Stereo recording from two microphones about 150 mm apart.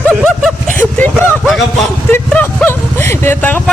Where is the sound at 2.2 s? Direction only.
10° left (ahead or behind).